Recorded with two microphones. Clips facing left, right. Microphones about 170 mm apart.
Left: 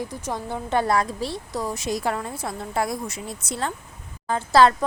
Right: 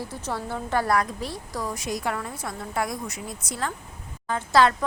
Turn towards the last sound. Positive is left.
turn(degrees=35)  # may be behind; listen again after turning